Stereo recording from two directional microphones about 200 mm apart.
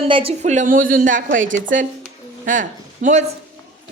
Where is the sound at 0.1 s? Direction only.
30° right (ahead or behind).